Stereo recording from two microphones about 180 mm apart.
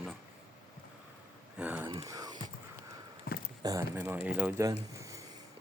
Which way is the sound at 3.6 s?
15° right (ahead or behind).